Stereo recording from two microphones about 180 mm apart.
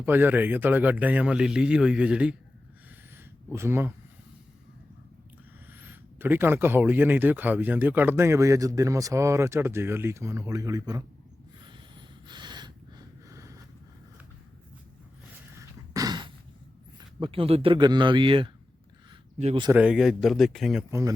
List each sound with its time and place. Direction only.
0.0 s speech: 10° right (ahead or behind)
3.5 s speech: 15° right (ahead or behind)
5.7 s speech: 10° right (ahead or behind)
11.6 s snort: 25° right (ahead or behind)
15.9 s a sound: 20° right (ahead or behind)
17.2 s speech: 30° right (ahead or behind)
19.7 s a man's voice: 5° right (ahead or behind)